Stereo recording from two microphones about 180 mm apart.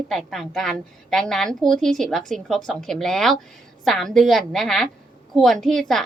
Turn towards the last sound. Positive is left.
turn(degrees=0)  # may be behind; listen again after turning